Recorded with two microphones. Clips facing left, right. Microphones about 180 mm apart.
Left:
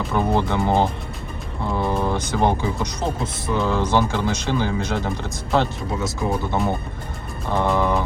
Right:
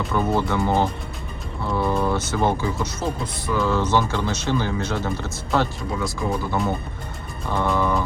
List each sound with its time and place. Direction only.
0.1 s speech: 20° left (ahead or behind)